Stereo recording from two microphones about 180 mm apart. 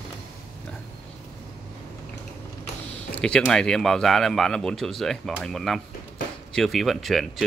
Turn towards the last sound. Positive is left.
turn(degrees=0)  # may be behind; listen again after turning